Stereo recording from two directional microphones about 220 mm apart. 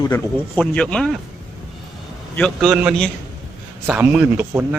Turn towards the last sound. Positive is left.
turn(degrees=-10)  # may be behind; listen again after turning